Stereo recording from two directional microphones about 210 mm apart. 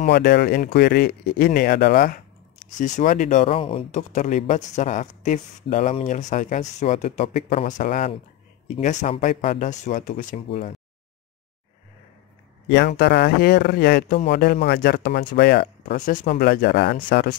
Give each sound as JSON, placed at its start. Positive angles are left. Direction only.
{"t": 0.1, "sound": "speech", "side_deg": 50}
{"t": 12.6, "sound": "speech", "side_deg": 50}